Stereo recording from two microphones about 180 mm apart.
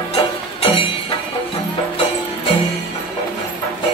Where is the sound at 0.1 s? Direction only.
30° left (ahead or behind).